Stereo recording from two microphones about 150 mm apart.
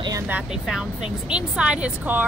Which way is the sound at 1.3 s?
5° right (ahead or behind).